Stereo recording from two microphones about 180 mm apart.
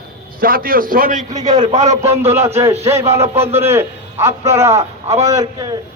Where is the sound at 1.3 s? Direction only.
20° right (ahead or behind).